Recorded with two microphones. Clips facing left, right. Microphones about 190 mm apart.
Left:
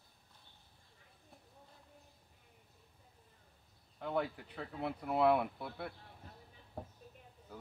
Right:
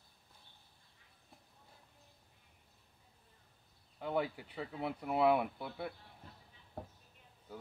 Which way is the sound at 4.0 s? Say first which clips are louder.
Right 1 dB; 5° right (ahead or behind).